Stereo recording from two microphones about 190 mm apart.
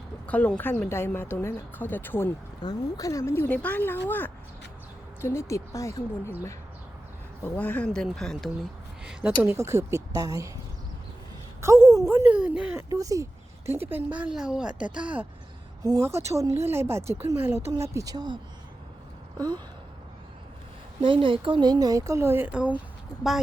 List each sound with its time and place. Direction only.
0.3 s a woman's voice: 10° left (ahead or behind)
7.4 s a woman's voice: 10° left (ahead or behind)
9.4 s speech: 15° right (ahead or behind)
11.6 s a woman's voice: 15° right (ahead or behind)
12.0 s speech: 5° right (ahead or behind)
12.9 s a woman's voice: 15° right (ahead or behind)
19.4 s speech: 20° right (ahead or behind)
21.0 s speech: 25° right (ahead or behind); by 22.7 s 10° right (ahead or behind)